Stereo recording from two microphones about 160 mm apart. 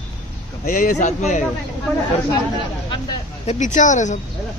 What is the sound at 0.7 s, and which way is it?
Speech, 55° left (ahead or behind).